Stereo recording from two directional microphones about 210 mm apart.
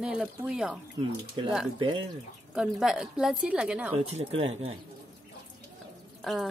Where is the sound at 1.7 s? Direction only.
25° right (ahead or behind).